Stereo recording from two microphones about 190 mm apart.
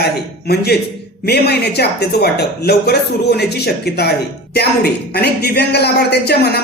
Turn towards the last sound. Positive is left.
turn(degrees=60)  # may be behind; listen again after turning